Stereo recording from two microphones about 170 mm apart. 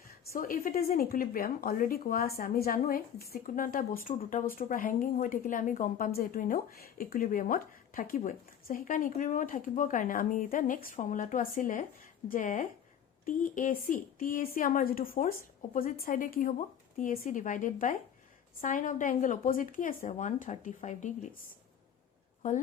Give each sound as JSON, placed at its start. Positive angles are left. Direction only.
{"t": 0.3, "sound": "speech", "side_deg": 55}
{"t": 22.4, "sound": "speech", "side_deg": 50}